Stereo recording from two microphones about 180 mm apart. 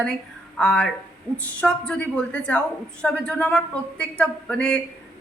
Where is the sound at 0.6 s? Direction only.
5° left (ahead or behind).